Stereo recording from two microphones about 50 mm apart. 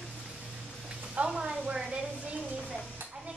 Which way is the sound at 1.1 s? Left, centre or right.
Centre.